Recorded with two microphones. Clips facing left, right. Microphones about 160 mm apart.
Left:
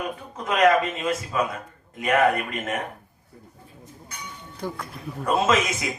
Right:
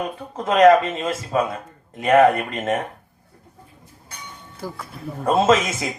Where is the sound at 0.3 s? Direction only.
35° right (ahead or behind).